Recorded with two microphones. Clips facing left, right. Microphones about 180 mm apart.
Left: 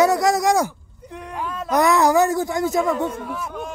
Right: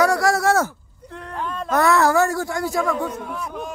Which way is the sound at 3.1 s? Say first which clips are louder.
Left 1 dB; centre (ahead or behind).